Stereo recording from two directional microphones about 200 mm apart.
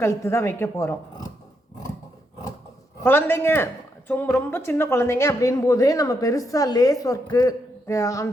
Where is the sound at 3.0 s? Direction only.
10° left (ahead or behind).